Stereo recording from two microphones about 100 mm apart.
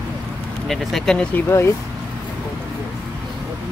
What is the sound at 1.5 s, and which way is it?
Speech, 25° left (ahead or behind).